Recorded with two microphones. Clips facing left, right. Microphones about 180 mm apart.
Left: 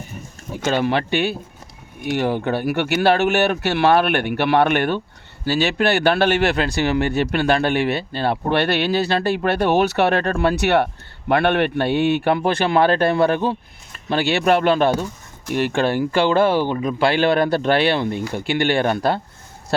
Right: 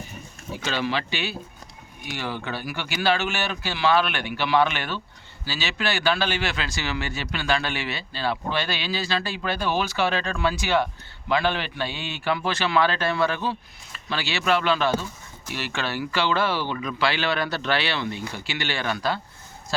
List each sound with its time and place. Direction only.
0.5 s a man's voice: 50° left (ahead or behind)